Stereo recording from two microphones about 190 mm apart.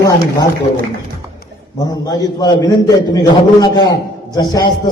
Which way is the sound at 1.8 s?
20° left (ahead or behind).